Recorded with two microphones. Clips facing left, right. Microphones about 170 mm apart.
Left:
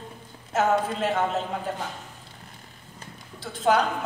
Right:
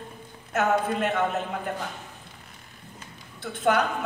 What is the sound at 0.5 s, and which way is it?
Speech, 55° right (ahead or behind).